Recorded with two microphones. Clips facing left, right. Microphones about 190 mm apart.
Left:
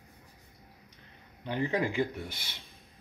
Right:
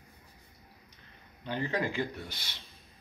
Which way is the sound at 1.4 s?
20° left (ahead or behind).